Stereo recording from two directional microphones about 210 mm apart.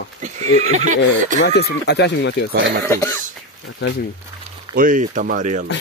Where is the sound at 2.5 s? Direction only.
55° right (ahead or behind).